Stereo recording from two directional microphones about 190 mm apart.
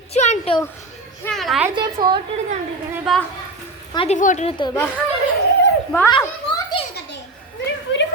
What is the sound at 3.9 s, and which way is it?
Speech, 25° left (ahead or behind).